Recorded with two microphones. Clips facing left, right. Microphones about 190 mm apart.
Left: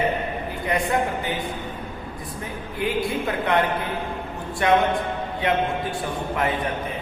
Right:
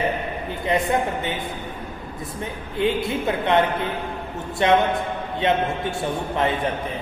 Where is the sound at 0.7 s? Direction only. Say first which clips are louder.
Right 2 dB; 25° right (ahead or behind).